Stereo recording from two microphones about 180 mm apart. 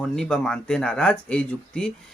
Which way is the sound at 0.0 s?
5° left (ahead or behind).